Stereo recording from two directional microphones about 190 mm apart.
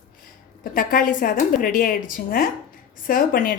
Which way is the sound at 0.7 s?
45° left (ahead or behind).